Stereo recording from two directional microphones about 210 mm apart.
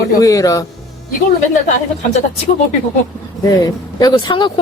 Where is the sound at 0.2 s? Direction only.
15° left (ahead or behind).